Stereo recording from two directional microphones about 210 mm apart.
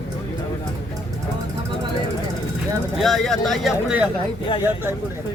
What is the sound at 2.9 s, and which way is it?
Speech, centre (ahead or behind).